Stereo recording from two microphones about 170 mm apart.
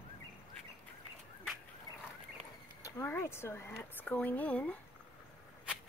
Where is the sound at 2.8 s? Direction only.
15° left (ahead or behind).